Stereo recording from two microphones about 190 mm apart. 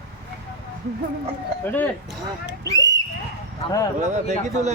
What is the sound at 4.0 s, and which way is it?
Speech, 40° right (ahead or behind).